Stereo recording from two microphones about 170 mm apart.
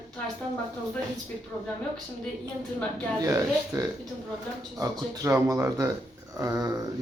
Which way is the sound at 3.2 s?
20° right (ahead or behind).